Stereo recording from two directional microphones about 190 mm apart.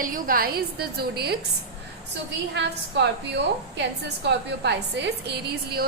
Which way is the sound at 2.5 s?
65° right (ahead or behind).